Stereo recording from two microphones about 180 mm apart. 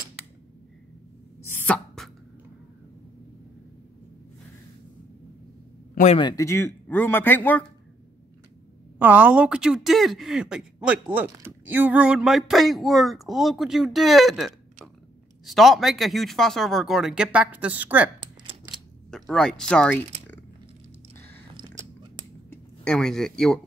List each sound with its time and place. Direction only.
1.5 s chopping: 5° left (ahead or behind)
6.1 s speech: 20° left (ahead or behind)
8.9 s speech: 10° right (ahead or behind)
18.2 s a sound: 25° right (ahead or behind)
19.0 s speech: 5° left (ahead or behind)
21.5 s chewing: 25° right (ahead or behind)
22.5 s speech: 5° left (ahead or behind)